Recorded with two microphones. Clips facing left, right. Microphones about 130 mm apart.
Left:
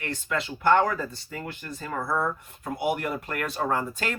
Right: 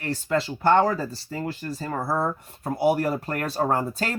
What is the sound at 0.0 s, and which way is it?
Speech, 35° right (ahead or behind).